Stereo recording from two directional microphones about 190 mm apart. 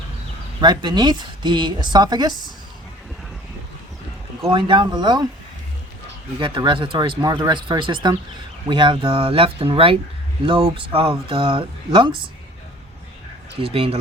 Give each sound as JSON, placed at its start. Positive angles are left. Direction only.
{"t": 0.6, "sound": "speech", "side_deg": -25}
{"t": 4.4, "sound": "speech", "side_deg": -25}
{"t": 6.4, "sound": "speech", "side_deg": -25}
{"t": 13.6, "sound": "speech", "side_deg": -30}